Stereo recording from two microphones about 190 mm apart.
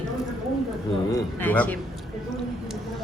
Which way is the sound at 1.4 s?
10° left (ahead or behind).